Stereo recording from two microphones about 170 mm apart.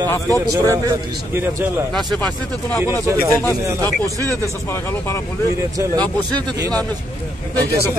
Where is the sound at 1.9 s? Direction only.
5° left (ahead or behind).